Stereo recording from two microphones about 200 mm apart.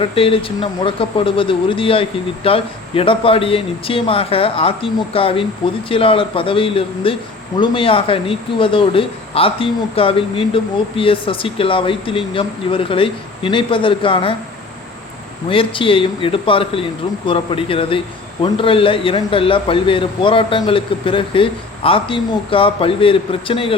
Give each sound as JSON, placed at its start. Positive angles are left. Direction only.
{"t": 0.0, "sound": "speech", "side_deg": 25}
{"t": 15.4, "sound": "speech", "side_deg": 25}